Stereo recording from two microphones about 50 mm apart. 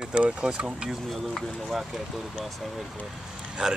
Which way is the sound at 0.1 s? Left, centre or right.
Right.